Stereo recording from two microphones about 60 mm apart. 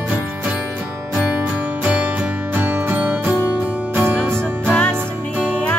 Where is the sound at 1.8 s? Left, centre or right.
Right.